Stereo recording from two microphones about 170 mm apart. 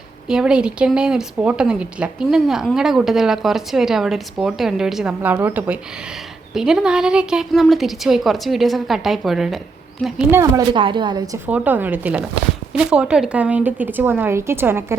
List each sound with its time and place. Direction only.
0.3 s a woman's voice: 5° right (ahead or behind)
10.3 s speech: 20° right (ahead or behind)
11.4 s speech: 10° right (ahead or behind)